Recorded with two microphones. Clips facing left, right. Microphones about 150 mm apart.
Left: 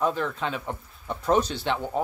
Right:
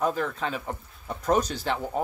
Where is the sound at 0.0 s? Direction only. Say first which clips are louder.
Left 1 dB; 40° right (ahead or behind).